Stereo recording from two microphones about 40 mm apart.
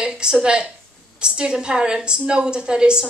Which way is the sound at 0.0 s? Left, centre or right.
Right.